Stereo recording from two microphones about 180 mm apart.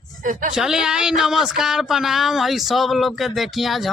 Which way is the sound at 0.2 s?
45° right (ahead or behind).